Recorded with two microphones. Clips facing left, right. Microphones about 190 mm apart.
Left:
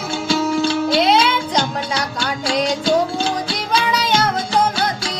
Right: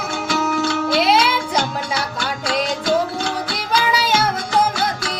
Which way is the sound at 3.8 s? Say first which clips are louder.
Even; 5° right (ahead or behind).